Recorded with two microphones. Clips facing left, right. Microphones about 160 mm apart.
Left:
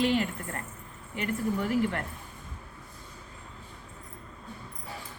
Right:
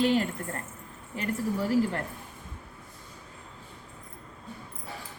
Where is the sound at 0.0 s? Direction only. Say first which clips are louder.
Right 2 dB; 40° right (ahead or behind).